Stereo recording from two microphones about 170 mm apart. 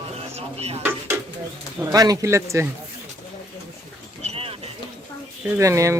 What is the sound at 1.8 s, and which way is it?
Child singing, 20° right (ahead or behind).